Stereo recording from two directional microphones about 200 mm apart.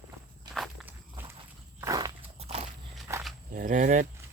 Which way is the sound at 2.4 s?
30° right (ahead or behind).